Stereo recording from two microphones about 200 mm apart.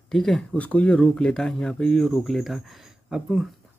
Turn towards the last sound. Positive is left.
turn(degrees=-5)  # may be behind; listen again after turning